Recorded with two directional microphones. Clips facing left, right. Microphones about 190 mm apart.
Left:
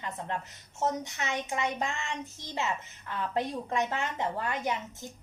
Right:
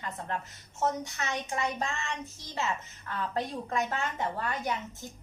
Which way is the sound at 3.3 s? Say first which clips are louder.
Left 2 dB; 20° left (ahead or behind).